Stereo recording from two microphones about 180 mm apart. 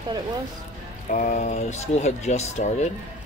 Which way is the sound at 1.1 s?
45° left (ahead or behind).